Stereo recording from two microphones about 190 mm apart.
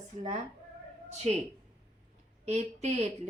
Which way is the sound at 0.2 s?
35° right (ahead or behind).